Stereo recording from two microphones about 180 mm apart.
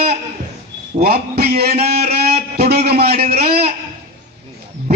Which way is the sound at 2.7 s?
60° right (ahead or behind).